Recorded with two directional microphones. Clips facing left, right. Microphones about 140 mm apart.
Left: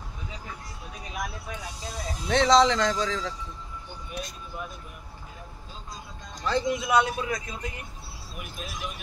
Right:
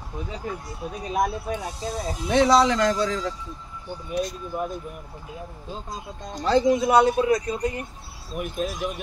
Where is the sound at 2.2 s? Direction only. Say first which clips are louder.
Right 2 dB; 10° right (ahead or behind).